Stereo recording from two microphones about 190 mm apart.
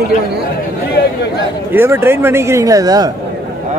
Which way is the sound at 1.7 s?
10° right (ahead or behind).